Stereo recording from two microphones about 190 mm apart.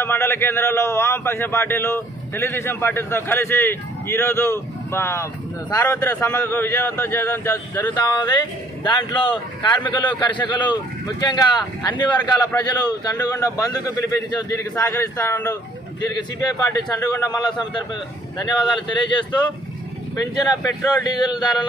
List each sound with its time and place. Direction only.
0.0 s a man's voice: 10° left (ahead or behind)
7.9 s a man's voice: 25° left (ahead or behind)
21.0 s a man's voice: 20° left (ahead or behind)